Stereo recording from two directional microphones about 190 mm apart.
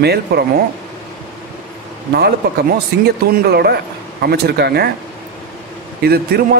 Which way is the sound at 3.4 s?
55° right (ahead or behind).